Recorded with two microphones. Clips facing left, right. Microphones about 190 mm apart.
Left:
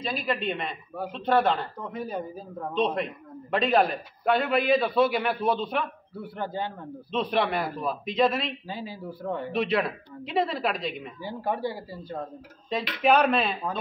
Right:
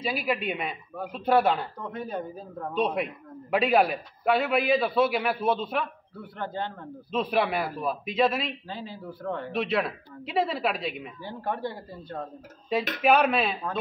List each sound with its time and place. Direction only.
0.0 s a man's voice: 10° right (ahead or behind)
6.2 s a man's voice: 10° left (ahead or behind)
7.1 s a man's voice: 5° right (ahead or behind)
8.6 s a man's voice: 10° left (ahead or behind)
9.5 s a man's voice: centre (ahead or behind)
11.2 s a man's voice: 10° left (ahead or behind)
13.0 s a man's voice: 5° right (ahead or behind)